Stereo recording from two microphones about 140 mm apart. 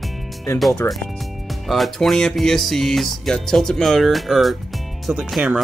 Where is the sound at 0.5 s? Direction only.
20° left (ahead or behind).